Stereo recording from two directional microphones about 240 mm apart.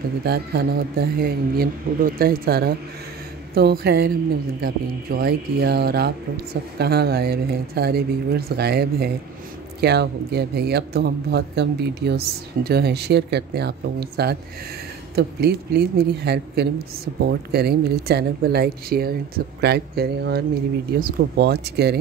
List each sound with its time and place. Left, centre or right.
0.2 s speech: right